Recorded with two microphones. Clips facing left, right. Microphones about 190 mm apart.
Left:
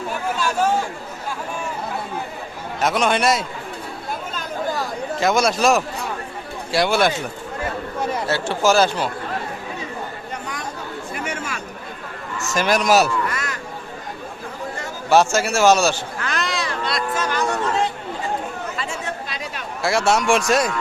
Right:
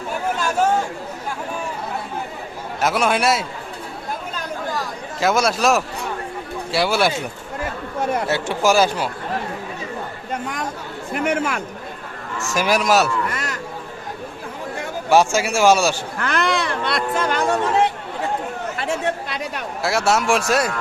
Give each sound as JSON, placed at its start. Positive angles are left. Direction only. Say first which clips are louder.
{"t": 2.8, "sound": "a man's voice", "louder": "even", "side_deg": -5}
{"t": 5.2, "sound": "a man's voice", "louder": "even", "side_deg": -5}
{"t": 8.3, "sound": "a man's voice", "louder": "left 2 dB", "side_deg": -15}
{"t": 10.3, "sound": "a sound", "louder": "right 7 dB", "side_deg": -50}
{"t": 11.1, "sound": "speech", "louder": "right 10 dB", "side_deg": -60}
{"t": 12.5, "sound": "a man's voice", "louder": "left 1 dB", "side_deg": -5}
{"t": 15.1, "sound": "a man's voice", "louder": "even", "side_deg": -10}
{"t": 16.1, "sound": "a sound", "louder": "right 4 dB", "side_deg": -55}
{"t": 18.8, "sound": "chatter", "louder": "right 5 dB", "side_deg": -60}
{"t": 19.8, "sound": "a man's voice", "louder": "left 1 dB", "side_deg": 0}